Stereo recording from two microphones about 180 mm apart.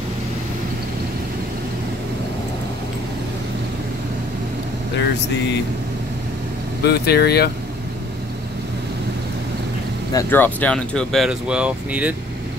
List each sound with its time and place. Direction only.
6.8 s speech: 65° left (ahead or behind)
10.1 s speech: 10° left (ahead or behind); by 12.2 s 5° right (ahead or behind)